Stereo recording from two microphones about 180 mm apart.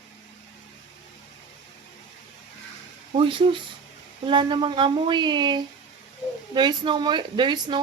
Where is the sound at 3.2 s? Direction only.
30° right (ahead or behind).